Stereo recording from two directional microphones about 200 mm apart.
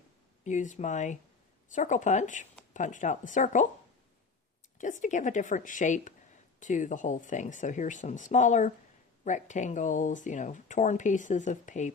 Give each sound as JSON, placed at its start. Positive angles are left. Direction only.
{"t": 0.4, "sound": "speech", "side_deg": 40}
{"t": 4.8, "sound": "speech", "side_deg": 40}